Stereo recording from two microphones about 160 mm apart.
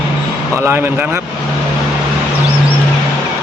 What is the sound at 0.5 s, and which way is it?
Speech, 15° right (ahead or behind).